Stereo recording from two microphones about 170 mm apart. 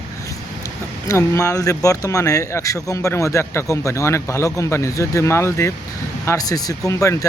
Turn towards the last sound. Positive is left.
turn(degrees=20)  # may be behind; listen again after turning